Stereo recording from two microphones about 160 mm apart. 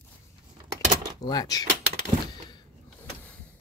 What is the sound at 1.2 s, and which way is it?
Speech, 25° left (ahead or behind).